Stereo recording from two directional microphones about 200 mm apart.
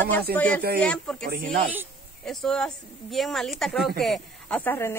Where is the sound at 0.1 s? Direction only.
10° left (ahead or behind).